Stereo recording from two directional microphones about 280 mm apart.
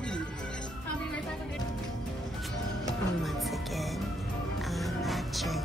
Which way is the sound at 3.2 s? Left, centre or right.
Centre.